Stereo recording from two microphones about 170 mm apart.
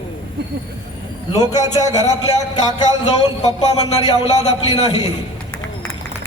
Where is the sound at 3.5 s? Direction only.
35° left (ahead or behind).